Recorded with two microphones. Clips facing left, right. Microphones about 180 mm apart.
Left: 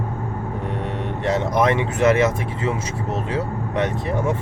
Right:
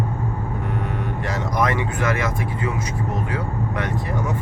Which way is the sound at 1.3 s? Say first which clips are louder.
Left 5 dB; 25° left (ahead or behind).